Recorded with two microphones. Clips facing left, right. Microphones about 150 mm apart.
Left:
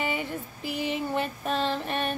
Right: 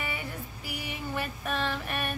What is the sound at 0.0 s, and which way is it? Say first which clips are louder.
Female singing: left 6 dB; 20° left (ahead or behind).